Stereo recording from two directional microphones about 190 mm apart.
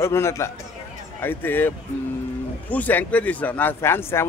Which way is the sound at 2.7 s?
10° left (ahead or behind).